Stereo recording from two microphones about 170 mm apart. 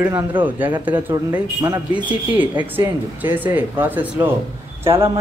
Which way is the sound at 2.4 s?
10° right (ahead or behind).